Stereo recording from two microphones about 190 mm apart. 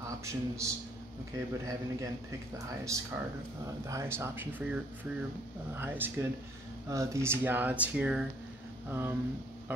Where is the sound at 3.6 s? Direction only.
15° right (ahead or behind).